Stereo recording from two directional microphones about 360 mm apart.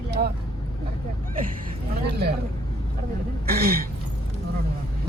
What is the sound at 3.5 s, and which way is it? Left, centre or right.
Speech, right.